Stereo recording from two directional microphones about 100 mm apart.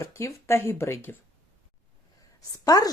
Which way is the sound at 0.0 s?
30° left (ahead or behind).